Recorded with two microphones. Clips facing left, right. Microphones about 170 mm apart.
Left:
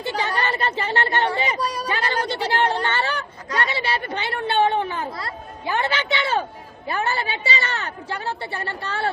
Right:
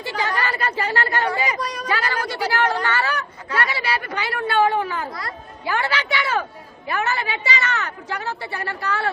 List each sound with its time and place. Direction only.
0.0 s a woman's voice: 25° left (ahead or behind)